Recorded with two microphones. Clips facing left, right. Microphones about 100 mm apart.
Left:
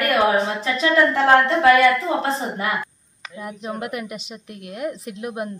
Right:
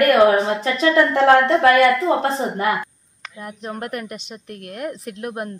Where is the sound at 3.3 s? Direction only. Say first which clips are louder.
Left 1 dB; 5° left (ahead or behind).